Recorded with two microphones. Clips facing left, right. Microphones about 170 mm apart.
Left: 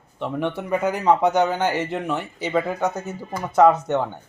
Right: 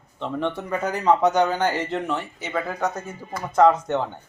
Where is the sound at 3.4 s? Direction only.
10° left (ahead or behind).